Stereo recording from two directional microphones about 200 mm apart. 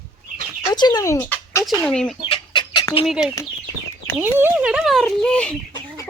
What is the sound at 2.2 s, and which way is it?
Chicken, 25° left (ahead or behind).